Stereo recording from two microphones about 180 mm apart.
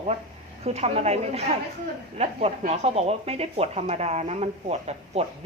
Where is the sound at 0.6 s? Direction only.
35° right (ahead or behind).